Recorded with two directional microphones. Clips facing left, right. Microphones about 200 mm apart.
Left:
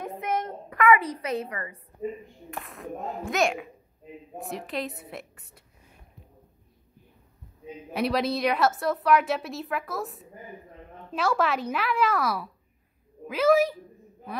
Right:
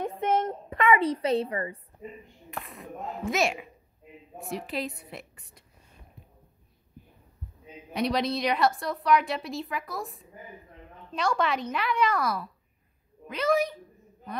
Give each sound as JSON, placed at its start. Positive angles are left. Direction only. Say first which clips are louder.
{"t": 0.2, "sound": "a sound", "louder": "right 4 dB", "side_deg": -25}
{"t": 2.5, "sound": "a woman's voice", "louder": "left 3 dB", "side_deg": 0}
{"t": 7.9, "sound": "a woman's voice", "louder": "left 1 dB", "side_deg": 5}